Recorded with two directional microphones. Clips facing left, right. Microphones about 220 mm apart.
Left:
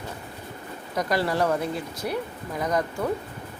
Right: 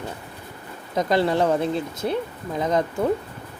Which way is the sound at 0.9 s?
25° right (ahead or behind).